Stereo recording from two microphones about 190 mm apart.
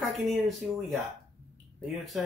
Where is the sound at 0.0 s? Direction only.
Centre (ahead or behind).